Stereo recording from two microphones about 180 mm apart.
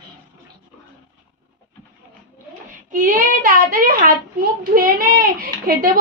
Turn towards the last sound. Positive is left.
turn(degrees=-50)  # may be behind; listen again after turning